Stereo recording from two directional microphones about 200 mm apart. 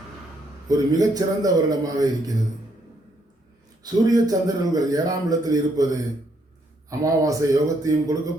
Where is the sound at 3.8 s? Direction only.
20° right (ahead or behind).